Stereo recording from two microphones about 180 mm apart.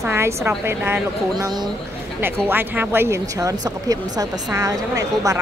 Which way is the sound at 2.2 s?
10° right (ahead or behind).